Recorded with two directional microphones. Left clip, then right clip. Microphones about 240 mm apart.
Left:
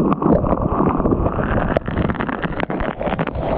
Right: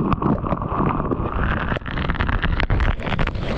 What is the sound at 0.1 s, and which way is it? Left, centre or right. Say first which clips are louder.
Boat: left 5 dB; centre.